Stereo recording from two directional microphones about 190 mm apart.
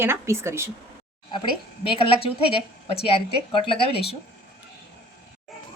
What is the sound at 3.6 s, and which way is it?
Speech, 30° left (ahead or behind).